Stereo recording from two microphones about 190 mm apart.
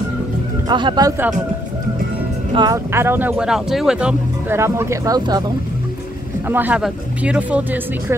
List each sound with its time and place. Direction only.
0.7 s speech: 25° right (ahead or behind)
2.5 s speech: 20° right (ahead or behind)
6.5 s speech: 10° right (ahead or behind)